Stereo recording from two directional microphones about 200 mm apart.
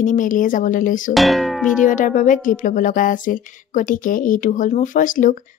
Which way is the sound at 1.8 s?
40° left (ahead or behind).